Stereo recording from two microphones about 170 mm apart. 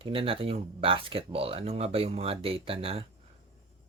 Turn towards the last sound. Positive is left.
turn(degrees=-35)  # may be behind; listen again after turning